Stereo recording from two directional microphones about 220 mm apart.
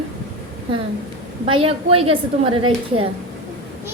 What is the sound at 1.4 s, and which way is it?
A woman's voice, 25° right (ahead or behind).